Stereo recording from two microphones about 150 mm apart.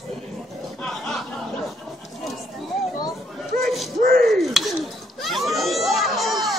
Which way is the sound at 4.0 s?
75° right (ahead or behind).